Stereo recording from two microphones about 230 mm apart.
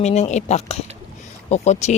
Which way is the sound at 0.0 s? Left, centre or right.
Left.